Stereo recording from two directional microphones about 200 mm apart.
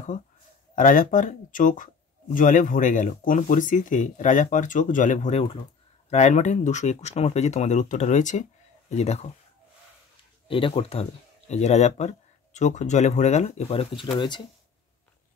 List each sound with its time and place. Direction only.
0.7 s speech: 40° left (ahead or behind)
10.5 s speech: 25° left (ahead or behind)